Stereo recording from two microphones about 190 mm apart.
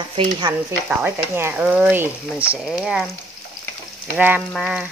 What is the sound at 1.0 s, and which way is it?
Speech, 10° right (ahead or behind).